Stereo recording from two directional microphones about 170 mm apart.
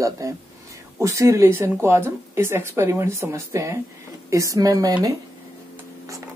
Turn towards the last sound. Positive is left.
turn(degrees=-20)  # may be behind; listen again after turning